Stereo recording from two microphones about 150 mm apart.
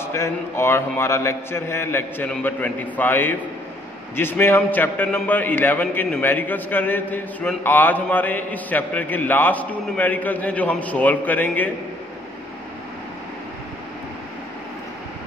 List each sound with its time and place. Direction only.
0.0 s a man's voice: 20° left (ahead or behind)